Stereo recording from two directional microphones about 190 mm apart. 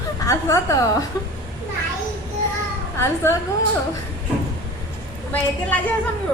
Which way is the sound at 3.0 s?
15° left (ahead or behind).